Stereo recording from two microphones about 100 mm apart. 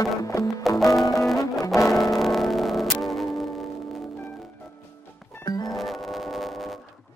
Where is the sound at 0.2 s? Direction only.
35° left (ahead or behind).